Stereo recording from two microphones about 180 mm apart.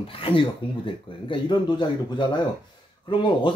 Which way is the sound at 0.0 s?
30° left (ahead or behind).